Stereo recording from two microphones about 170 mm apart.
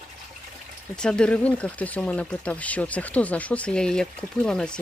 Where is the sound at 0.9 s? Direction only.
5° left (ahead or behind).